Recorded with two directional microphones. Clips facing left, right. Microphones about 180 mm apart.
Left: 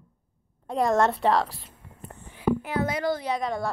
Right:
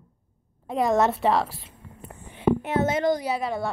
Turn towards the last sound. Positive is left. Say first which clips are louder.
# right 1 dB
turn(degrees=-5)  # may be behind; listen again after turning